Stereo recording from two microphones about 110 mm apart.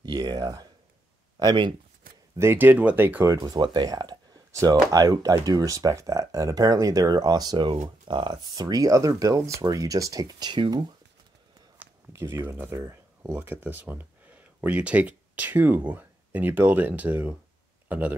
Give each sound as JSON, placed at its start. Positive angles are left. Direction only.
{"t": 0.0, "sound": "speech", "side_deg": -40}
{"t": 2.3, "sound": "speech", "side_deg": -20}
{"t": 3.3, "sound": "speech", "side_deg": -30}
{"t": 7.7, "sound": "speech", "side_deg": -85}
{"t": 8.1, "sound": "speech", "side_deg": -45}
{"t": 11.8, "sound": "speech", "side_deg": -25}